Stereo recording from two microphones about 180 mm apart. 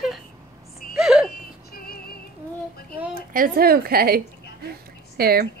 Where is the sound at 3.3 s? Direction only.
55° right (ahead or behind).